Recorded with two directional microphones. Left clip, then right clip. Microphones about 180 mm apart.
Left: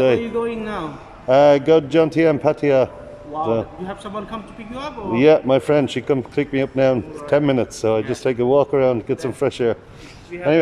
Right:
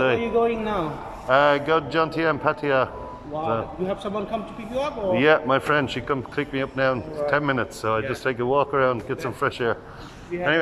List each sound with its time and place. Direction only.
0.0 s a man's voice: 30° left (ahead or behind)
10.3 s speech: 15° left (ahead or behind)